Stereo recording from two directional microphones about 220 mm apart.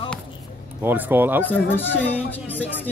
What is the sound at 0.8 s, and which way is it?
Speech, 10° right (ahead or behind).